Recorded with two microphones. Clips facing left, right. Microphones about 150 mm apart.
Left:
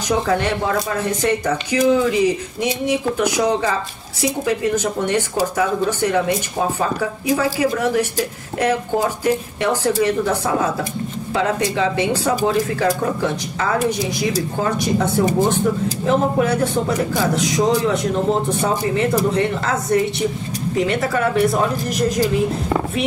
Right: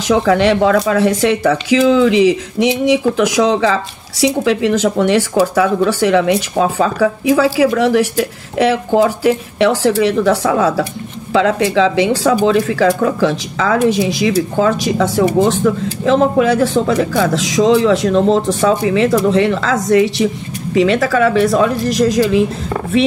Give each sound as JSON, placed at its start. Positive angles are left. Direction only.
{"t": 0.1, "sound": "speech", "side_deg": -90}